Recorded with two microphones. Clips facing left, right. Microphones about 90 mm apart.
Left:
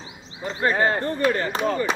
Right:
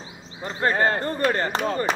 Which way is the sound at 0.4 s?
40° right (ahead or behind).